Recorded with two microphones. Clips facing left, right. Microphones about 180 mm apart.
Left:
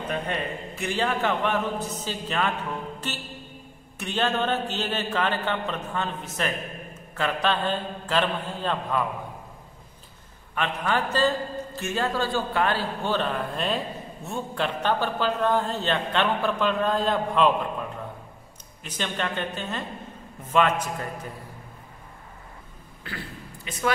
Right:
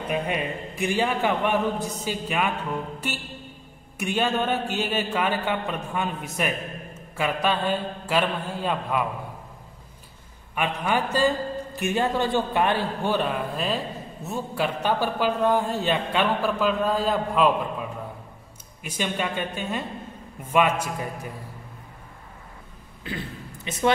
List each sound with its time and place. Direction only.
0.1 s a man's voice: 10° right (ahead or behind)
10.5 s a man's voice: 10° right (ahead or behind)
23.0 s a sound: 20° right (ahead or behind)